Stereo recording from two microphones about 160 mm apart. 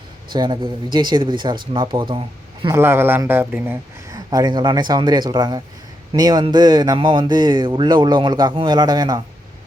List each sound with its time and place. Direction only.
0.3 s speech: 30° right (ahead or behind)
2.7 s a man's voice: 15° right (ahead or behind)
4.1 s speech: 25° right (ahead or behind)